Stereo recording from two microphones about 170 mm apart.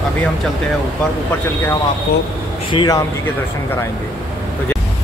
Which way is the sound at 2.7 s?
20° left (ahead or behind).